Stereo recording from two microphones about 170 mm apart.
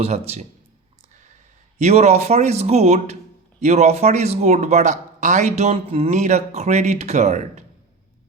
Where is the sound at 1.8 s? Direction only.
40° right (ahead or behind).